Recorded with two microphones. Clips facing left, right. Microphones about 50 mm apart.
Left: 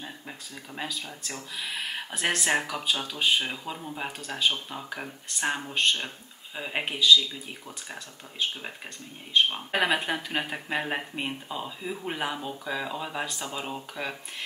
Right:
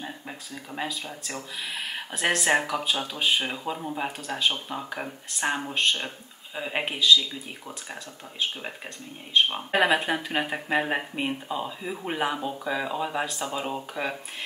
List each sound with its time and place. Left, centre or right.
1.6 s speech: centre
9.8 s speech: centre